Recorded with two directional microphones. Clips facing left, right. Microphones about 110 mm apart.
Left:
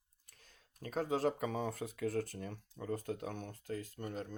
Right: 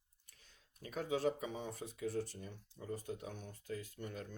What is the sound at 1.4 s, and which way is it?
Speech, 65° left (ahead or behind).